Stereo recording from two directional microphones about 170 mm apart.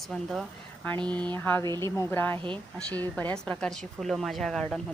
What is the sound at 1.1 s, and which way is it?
Speech, 25° right (ahead or behind).